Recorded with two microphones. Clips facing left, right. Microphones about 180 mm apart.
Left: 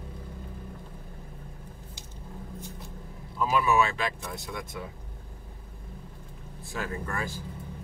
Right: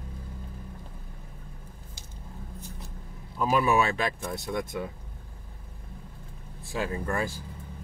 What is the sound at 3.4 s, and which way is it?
Speech, 45° right (ahead or behind).